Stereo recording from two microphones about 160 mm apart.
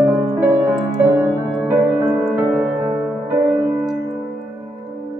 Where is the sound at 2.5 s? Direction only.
5° left (ahead or behind).